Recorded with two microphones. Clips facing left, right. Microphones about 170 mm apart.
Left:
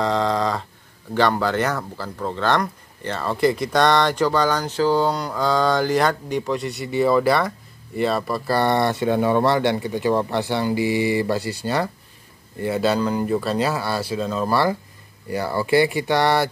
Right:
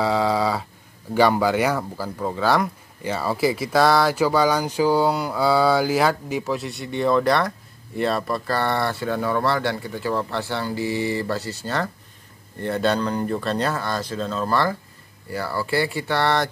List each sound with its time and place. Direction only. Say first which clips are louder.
0.0 s a sound: even; 5° right (ahead or behind)
1.1 s speech: right 2 dB; 10° right (ahead or behind)
8.5 s speech: left 6 dB; 15° left (ahead or behind)